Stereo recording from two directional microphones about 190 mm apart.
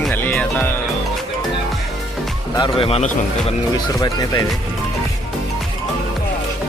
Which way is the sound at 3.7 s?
20° left (ahead or behind).